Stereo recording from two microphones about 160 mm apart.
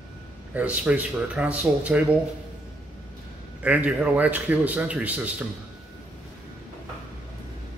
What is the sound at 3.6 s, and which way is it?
A man's voice, 10° right (ahead or behind).